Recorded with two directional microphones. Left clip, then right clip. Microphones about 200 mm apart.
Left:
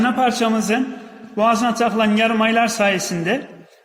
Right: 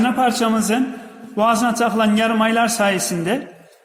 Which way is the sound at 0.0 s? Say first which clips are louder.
Even; centre (ahead or behind).